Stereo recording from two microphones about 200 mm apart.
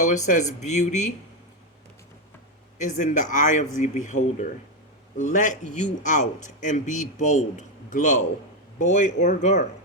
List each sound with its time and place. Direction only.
0.0 s a man's voice: 35° left (ahead or behind)
2.7 s a man's voice: 40° left (ahead or behind)